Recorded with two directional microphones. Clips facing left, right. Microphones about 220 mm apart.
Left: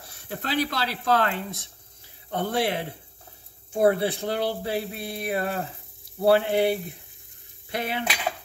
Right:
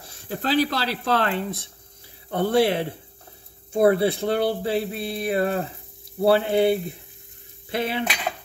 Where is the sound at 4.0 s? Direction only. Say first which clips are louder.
Right 5 dB; 30° right (ahead or behind).